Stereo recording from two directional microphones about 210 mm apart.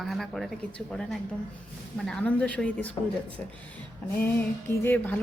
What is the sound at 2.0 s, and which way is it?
Speech, 5° left (ahead or behind).